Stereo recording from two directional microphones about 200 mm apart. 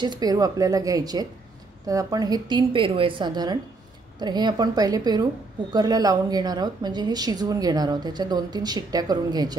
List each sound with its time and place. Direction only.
0.0 s a woman's voice: 20° right (ahead or behind)